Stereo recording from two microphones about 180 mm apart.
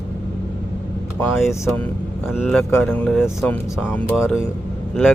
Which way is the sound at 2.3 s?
Centre (ahead or behind).